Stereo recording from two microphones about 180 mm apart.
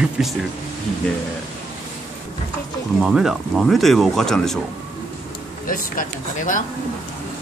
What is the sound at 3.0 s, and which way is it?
Speech, 5° right (ahead or behind).